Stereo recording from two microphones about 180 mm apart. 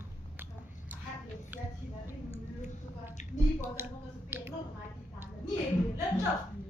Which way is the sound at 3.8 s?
10° right (ahead or behind).